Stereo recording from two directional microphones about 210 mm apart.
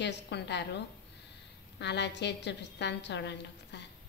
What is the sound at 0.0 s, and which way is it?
Speech, 55° left (ahead or behind).